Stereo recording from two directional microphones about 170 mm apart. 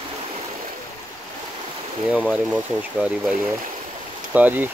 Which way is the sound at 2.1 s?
5° right (ahead or behind).